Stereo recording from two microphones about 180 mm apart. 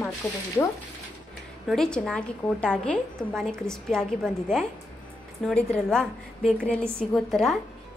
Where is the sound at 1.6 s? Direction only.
5° left (ahead or behind).